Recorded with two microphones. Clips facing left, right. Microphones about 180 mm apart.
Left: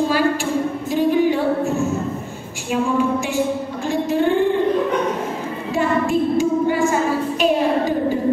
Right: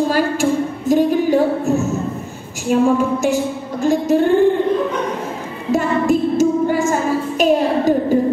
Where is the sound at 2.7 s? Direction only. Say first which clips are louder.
Right 4 dB; 40° right (ahead or behind).